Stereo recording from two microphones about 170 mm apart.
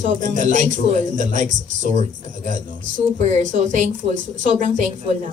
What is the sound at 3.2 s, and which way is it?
Speech, 50° right (ahead or behind).